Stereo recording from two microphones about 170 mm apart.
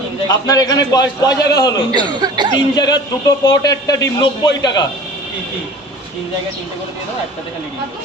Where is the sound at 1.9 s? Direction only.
25° right (ahead or behind).